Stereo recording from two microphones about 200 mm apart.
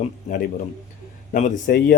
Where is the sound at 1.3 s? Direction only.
45° left (ahead or behind).